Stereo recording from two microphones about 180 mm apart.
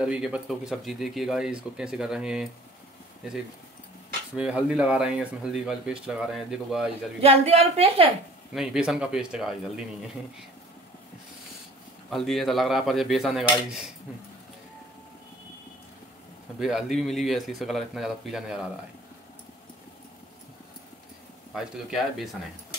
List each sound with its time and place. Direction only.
0.0 s speech: 5° right (ahead or behind)
4.3 s speech: 5° right (ahead or behind)
7.2 s a woman's voice: 35° right (ahead or behind)
8.5 s speech: 5° right (ahead or behind)
12.1 s speech: centre (ahead or behind)
16.5 s speech: centre (ahead or behind)
21.5 s speech: centre (ahead or behind)